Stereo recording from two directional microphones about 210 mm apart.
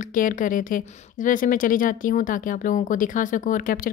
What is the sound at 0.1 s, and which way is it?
A woman's voice, 40° left (ahead or behind).